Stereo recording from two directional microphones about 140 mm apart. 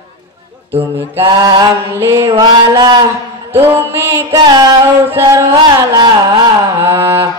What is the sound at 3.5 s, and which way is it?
Music, 15° right (ahead or behind).